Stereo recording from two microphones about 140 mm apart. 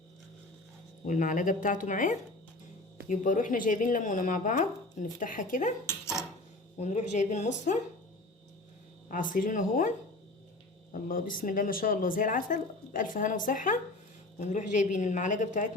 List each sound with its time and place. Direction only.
1.0 s speech: 65° left (ahead or behind)
5.8 s cutlery: 20° left (ahead or behind)
6.7 s a woman's voice: 55° left (ahead or behind)
9.0 s speech: 70° left (ahead or behind)
10.9 s a woman's voice: 80° left; by 15.7 s 65° left (ahead or behind)